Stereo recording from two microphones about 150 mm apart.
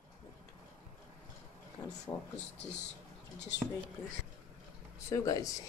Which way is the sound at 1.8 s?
20° left (ahead or behind).